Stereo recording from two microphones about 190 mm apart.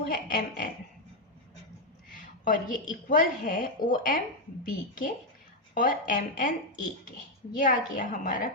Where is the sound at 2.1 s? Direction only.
45° left (ahead or behind).